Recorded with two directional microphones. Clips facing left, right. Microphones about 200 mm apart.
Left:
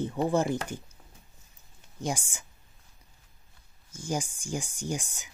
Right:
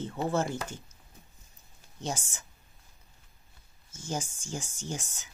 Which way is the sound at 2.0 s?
10° left (ahead or behind).